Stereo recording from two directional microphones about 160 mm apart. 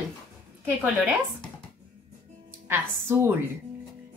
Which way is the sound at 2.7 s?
15° right (ahead or behind).